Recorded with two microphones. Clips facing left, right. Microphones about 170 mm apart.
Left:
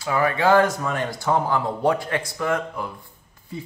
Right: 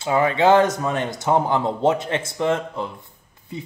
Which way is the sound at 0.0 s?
25° right (ahead or behind).